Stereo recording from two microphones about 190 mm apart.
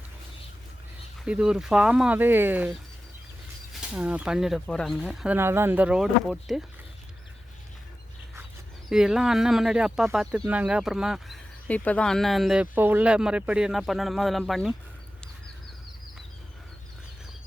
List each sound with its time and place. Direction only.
1.2 s speech: 5° right (ahead or behind)
8.9 s speech: 5° right (ahead or behind)